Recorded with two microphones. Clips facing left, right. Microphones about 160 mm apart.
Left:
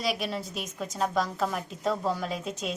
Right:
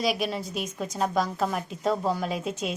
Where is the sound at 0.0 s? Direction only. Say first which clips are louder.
Right 3 dB; centre (ahead or behind).